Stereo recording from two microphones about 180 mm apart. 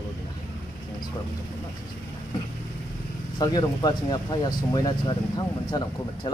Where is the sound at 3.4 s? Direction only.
25° left (ahead or behind).